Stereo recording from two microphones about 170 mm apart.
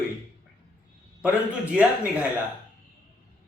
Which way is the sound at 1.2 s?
10° right (ahead or behind).